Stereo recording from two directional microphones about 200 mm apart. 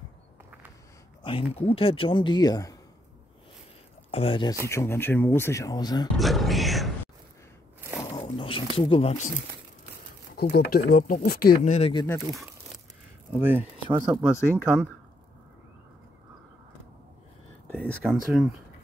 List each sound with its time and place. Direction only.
1.2 s speech: 25° left (ahead or behind)
4.1 s speech: 30° left (ahead or behind)
4.6 s speech: 15° left (ahead or behind)
6.1 s speech: centre (ahead or behind)
8.0 s a sound: 25° left (ahead or behind)
8.7 s speech: 25° left (ahead or behind)
10.3 s speech: 50° left (ahead or behind); by 11.9 s 35° left (ahead or behind)
11.9 s speech: 20° left (ahead or behind)
13.3 s speech: 10° right (ahead or behind)
13.8 s speech: 20° right (ahead or behind)
14.6 s speech: 5° right (ahead or behind)
17.6 s a sound: 5° left (ahead or behind)